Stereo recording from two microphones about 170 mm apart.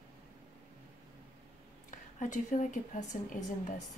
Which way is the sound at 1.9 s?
45° left (ahead or behind).